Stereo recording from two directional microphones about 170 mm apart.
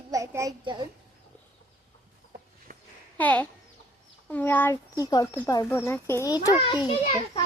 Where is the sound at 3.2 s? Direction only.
10° left (ahead or behind).